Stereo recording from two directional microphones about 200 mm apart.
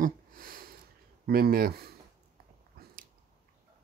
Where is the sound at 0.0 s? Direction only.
45° right (ahead or behind).